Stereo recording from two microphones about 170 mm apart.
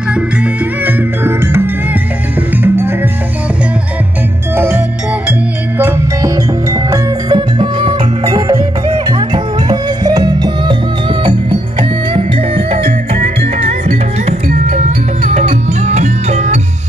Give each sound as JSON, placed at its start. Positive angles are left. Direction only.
{"t": 0.1, "sound": "music", "side_deg": -10}
{"t": 4.6, "sound": "music", "side_deg": -15}